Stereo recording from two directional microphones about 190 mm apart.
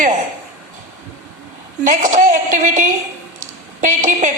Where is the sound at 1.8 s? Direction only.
40° right (ahead or behind).